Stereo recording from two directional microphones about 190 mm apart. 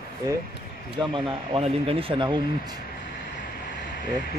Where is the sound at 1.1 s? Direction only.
30° right (ahead or behind).